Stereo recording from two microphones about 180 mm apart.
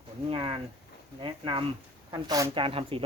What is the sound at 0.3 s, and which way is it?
Speech, 30° right (ahead or behind).